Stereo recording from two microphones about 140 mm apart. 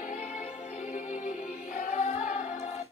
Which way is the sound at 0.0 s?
60° left (ahead or behind).